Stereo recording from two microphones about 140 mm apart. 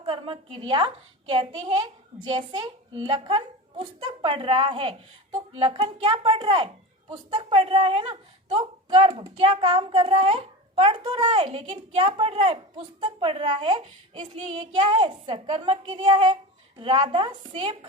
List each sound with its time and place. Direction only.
0.0 s speech: 40° right (ahead or behind)